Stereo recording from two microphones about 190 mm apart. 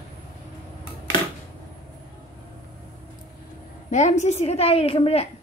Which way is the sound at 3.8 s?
35° left (ahead or behind).